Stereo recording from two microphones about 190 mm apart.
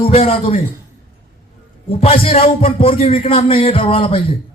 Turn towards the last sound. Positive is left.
turn(degrees=30)  # may be behind; listen again after turning